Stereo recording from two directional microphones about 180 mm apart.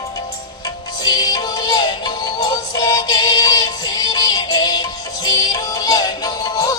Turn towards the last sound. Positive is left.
turn(degrees=20)  # may be behind; listen again after turning